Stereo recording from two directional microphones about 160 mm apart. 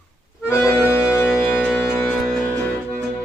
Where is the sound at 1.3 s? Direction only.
5° right (ahead or behind).